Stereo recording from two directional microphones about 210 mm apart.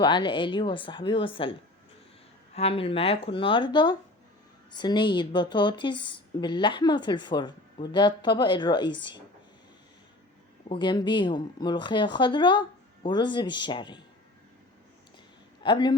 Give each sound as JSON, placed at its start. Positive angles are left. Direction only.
{"t": 0.0, "sound": "speech", "side_deg": 20}
{"t": 2.6, "sound": "speech", "side_deg": 25}
{"t": 10.7, "sound": "speech", "side_deg": 20}
{"t": 15.6, "sound": "speech", "side_deg": 20}